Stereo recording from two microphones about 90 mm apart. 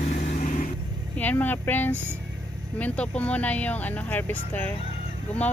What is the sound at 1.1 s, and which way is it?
Speech, 20° left (ahead or behind).